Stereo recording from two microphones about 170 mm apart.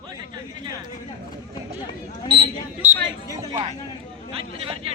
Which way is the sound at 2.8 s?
50° right (ahead or behind).